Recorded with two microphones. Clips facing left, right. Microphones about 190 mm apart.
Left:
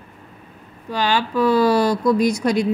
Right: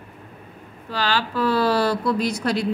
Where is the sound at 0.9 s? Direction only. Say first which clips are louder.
Left 4 dB; 15° left (ahead or behind).